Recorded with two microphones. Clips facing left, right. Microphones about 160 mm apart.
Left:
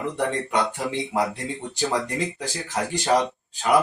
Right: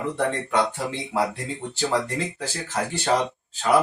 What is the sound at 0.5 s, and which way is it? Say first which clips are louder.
Speech: even; 15° left (ahead or behind).